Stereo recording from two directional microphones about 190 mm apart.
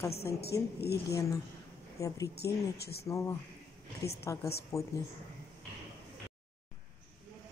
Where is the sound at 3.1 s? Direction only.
15° left (ahead or behind).